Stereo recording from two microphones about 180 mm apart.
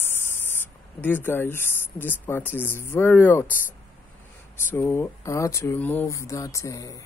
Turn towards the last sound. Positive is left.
turn(degrees=20)  # may be behind; listen again after turning